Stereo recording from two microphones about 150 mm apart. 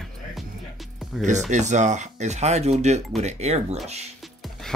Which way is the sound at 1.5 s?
50° right (ahead or behind).